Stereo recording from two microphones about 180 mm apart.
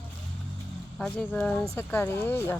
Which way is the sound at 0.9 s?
5° left (ahead or behind).